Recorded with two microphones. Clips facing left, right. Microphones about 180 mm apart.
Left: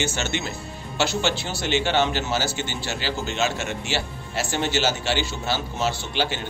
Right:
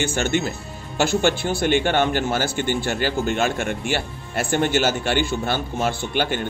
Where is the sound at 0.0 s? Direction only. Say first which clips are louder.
Right 5 dB; 50° right (ahead or behind).